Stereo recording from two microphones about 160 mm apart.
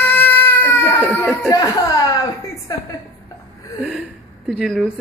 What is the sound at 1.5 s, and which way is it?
Speech, 25° left (ahead or behind).